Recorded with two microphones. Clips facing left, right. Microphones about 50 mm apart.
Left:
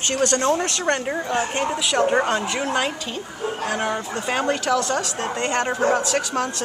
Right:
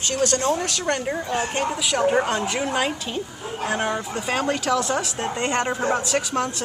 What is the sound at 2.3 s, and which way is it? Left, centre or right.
Speech, centre.